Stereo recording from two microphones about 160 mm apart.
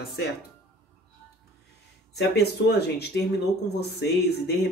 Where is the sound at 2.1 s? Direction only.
90° left.